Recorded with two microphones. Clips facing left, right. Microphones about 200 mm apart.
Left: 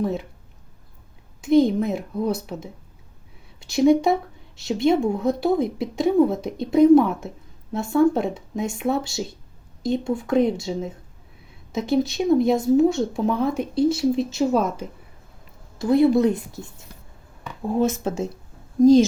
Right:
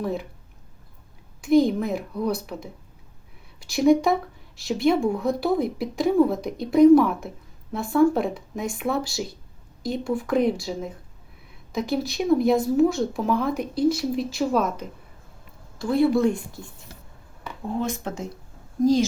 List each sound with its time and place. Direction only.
1.4 s speech: 20° left (ahead or behind)
15.8 s speech: 20° left (ahead or behind)